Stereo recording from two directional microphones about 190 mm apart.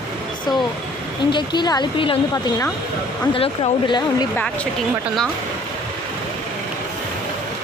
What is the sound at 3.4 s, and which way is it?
Speech, 30° left (ahead or behind).